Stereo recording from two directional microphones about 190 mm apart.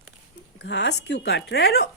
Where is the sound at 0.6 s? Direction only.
65° left (ahead or behind).